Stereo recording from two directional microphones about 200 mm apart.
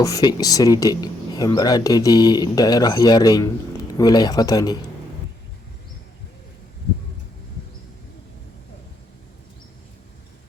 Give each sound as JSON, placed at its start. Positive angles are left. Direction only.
{"t": 0.0, "sound": "speech", "side_deg": 20}